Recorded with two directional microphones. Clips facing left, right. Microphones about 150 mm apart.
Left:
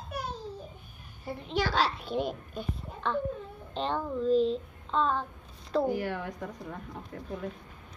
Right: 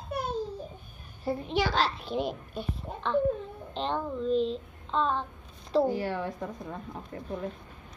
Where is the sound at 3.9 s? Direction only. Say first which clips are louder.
Left 1 dB; 20° right (ahead or behind).